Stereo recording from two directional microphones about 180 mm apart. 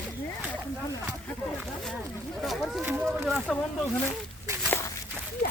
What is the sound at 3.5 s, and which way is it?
Speech, centre (ahead or behind).